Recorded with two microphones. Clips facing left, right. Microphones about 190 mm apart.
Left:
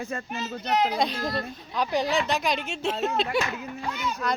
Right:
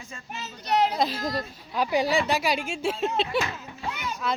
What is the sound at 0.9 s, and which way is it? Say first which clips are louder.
Speech: even; 5° right (ahead or behind).